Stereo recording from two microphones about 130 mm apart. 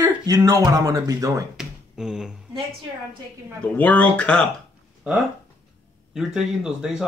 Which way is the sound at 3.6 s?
10° left (ahead or behind).